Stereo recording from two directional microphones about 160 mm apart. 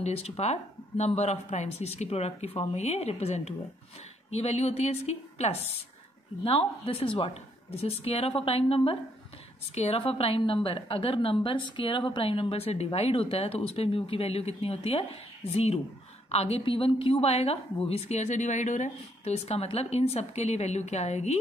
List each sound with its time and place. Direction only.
0.0 s a woman's voice: 40° left (ahead or behind)